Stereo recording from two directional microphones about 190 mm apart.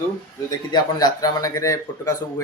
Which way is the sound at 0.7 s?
20° left (ahead or behind).